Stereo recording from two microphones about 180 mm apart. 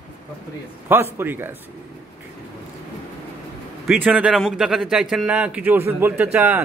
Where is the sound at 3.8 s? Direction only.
10° right (ahead or behind).